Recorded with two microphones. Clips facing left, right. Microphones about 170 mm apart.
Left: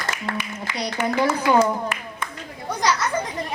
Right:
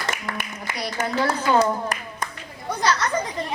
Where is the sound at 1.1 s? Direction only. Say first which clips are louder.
Left 2 dB; 15° left (ahead or behind).